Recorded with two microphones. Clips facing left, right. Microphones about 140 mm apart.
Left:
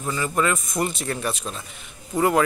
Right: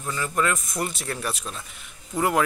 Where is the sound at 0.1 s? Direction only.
5° left (ahead or behind).